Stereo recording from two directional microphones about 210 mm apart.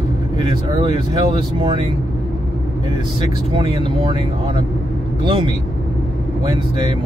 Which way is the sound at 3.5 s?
20° right (ahead or behind).